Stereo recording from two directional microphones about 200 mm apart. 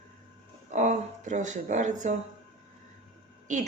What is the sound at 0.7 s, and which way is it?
Speech, 35° right (ahead or behind).